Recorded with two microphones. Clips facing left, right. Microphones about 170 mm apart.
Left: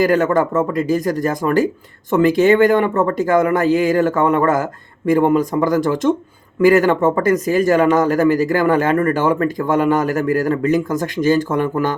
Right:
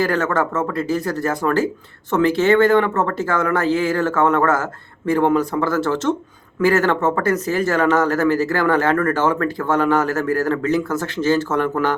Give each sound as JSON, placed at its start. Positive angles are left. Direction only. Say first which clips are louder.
{"t": 0.0, "sound": "speech", "louder": "left 4 dB", "side_deg": 15}